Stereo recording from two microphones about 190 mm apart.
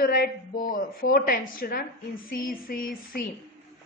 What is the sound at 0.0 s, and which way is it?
A woman's voice, 50° left (ahead or behind).